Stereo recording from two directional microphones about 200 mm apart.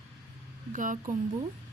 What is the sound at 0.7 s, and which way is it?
Speech, 40° right (ahead or behind).